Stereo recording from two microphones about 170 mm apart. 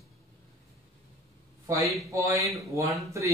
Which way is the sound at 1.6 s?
20° right (ahead or behind).